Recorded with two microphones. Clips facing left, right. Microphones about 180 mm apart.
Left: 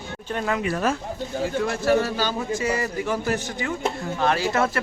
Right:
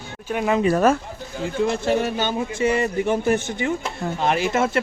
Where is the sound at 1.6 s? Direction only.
20° right (ahead or behind).